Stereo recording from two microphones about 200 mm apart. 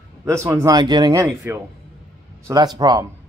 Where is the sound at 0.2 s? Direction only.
15° right (ahead or behind).